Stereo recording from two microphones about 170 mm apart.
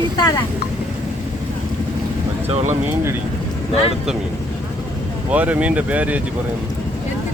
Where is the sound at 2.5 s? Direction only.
35° right (ahead or behind).